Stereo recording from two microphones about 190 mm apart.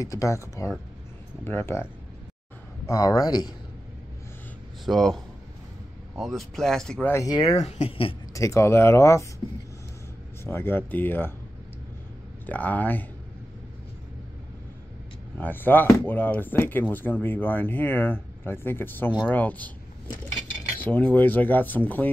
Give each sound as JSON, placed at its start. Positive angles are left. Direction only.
{"t": 0.0, "sound": "speech", "side_deg": 15}
{"t": 2.9, "sound": "speech", "side_deg": 20}
{"t": 4.8, "sound": "speech", "side_deg": 0}
{"t": 7.5, "sound": "speech", "side_deg": 35}
{"t": 8.3, "sound": "speech", "side_deg": 15}
{"t": 10.4, "sound": "speech", "side_deg": 10}
{"t": 12.4, "sound": "speech", "side_deg": 10}
{"t": 15.3, "sound": "speech", "side_deg": 10}
{"t": 20.3, "sound": "cutlery", "side_deg": 5}